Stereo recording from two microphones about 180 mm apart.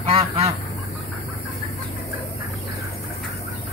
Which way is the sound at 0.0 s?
35° right (ahead or behind).